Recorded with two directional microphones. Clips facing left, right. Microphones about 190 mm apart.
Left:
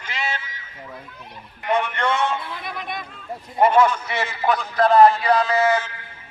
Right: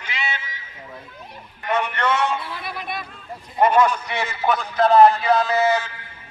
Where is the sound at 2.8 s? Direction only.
20° left (ahead or behind).